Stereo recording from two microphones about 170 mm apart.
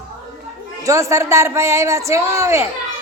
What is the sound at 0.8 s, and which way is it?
Speech, 20° right (ahead or behind).